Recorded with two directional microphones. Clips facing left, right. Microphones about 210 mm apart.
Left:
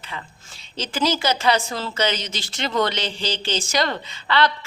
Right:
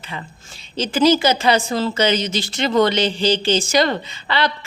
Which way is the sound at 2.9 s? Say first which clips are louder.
Right 9 dB; 10° right (ahead or behind).